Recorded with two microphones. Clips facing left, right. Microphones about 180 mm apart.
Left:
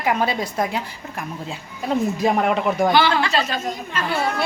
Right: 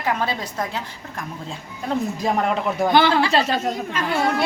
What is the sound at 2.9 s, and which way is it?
Speech, 55° right (ahead or behind).